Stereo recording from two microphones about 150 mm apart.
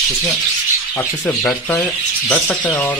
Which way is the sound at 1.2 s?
5° left (ahead or behind).